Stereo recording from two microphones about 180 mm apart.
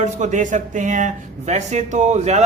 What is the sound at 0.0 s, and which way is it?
A man's voice, 45° right (ahead or behind).